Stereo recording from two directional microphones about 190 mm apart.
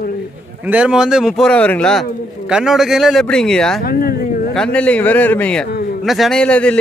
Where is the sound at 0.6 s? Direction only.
5° right (ahead or behind).